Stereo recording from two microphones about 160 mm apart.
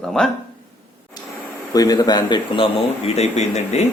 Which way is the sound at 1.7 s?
20° left (ahead or behind).